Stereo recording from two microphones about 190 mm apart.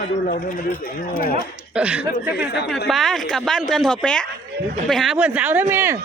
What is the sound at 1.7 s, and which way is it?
Speech, 5° right (ahead or behind).